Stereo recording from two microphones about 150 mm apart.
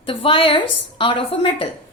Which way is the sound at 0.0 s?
35° left (ahead or behind).